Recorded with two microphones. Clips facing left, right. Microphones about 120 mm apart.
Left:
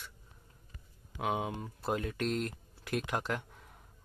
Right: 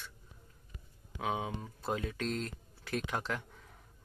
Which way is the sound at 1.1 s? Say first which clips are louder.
Left 2 dB; 10° left (ahead or behind).